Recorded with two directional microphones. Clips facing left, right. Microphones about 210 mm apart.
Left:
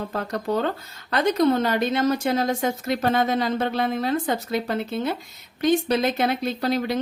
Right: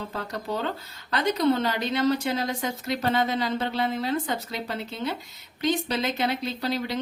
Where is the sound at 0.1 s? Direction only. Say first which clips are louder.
Left 6 dB; 50° left (ahead or behind).